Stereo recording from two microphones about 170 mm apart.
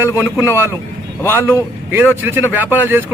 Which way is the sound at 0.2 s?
15° right (ahead or behind).